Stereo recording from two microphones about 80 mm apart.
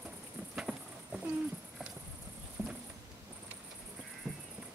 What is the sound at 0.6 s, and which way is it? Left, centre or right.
Patter, centre.